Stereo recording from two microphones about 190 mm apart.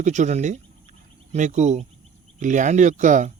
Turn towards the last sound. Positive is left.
turn(degrees=-40)  # may be behind; listen again after turning